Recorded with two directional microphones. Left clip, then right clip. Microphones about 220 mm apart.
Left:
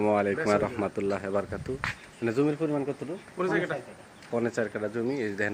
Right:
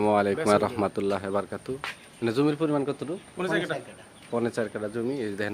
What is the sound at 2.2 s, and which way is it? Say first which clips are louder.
Speech: right 2 dB; 20° right (ahead or behind).